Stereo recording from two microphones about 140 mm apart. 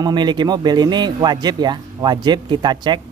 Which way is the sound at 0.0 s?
30° right (ahead or behind).